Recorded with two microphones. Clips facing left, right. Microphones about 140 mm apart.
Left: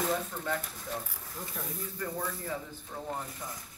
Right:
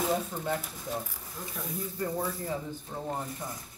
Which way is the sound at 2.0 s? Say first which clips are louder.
Right 4 dB; 35° right (ahead or behind).